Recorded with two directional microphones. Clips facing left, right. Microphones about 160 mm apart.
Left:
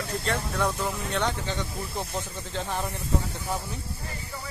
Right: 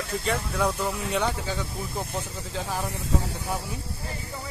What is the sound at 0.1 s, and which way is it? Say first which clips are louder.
Speech: right 2 dB; 5° right (ahead or behind).